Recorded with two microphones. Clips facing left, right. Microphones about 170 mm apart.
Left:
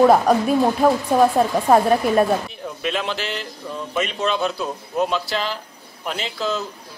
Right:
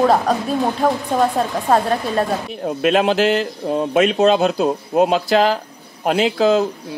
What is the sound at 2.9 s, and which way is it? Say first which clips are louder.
Speech: right 10 dB; 55° right (ahead or behind).